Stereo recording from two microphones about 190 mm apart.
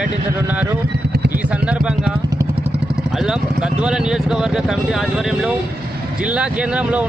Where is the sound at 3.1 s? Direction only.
5° right (ahead or behind).